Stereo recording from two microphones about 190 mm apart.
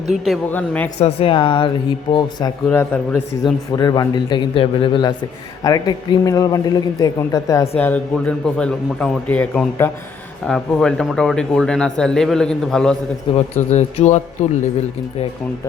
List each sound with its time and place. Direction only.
0.1 s speech: centre (ahead or behind)
0.9 s speech: 30° left (ahead or behind)
2.6 s speech: 10° left (ahead or behind)
3.4 s speech: 20° left (ahead or behind)
7.8 s speech: 10° left (ahead or behind)
13.3 s speech: 35° left (ahead or behind)